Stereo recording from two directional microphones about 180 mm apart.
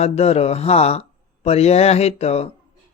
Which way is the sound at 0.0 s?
35° left (ahead or behind).